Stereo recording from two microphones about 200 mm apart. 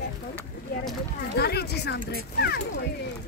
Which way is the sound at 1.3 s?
55° left (ahead or behind).